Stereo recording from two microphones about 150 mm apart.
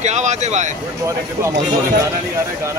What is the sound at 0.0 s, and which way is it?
Speech, 50° right (ahead or behind).